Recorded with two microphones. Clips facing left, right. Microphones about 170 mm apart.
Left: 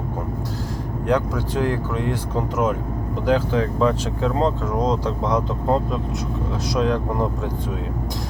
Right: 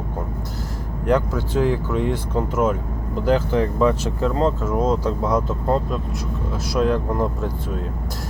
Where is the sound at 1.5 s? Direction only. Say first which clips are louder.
Right 3 dB; centre (ahead or behind).